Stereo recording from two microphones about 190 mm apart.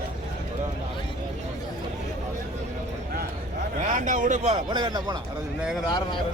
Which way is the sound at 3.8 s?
40° right (ahead or behind).